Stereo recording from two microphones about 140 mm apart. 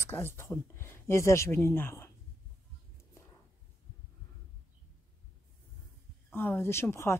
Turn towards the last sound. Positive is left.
turn(degrees=20)  # may be behind; listen again after turning